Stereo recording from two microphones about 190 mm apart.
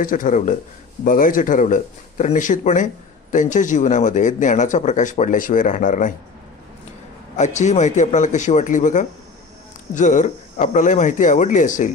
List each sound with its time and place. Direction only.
0.0 s speech: 45° left (ahead or behind)
7.3 s speech: 40° left (ahead or behind)